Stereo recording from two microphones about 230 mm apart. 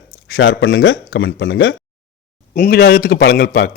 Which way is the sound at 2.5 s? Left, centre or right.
Left.